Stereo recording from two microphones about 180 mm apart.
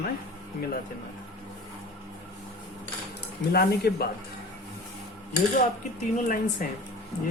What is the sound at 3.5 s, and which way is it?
Speech, 60° left (ahead or behind).